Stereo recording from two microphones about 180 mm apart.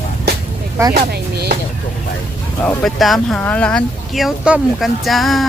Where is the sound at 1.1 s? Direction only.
60° right (ahead or behind).